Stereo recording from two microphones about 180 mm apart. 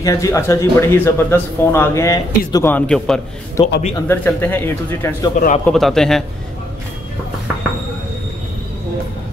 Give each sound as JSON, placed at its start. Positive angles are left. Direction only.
{"t": 0.0, "sound": "speech", "side_deg": 20}
{"t": 3.6, "sound": "speech", "side_deg": 20}
{"t": 4.1, "sound": "speech", "side_deg": 10}
{"t": 5.7, "sound": "a man's voice", "side_deg": 0}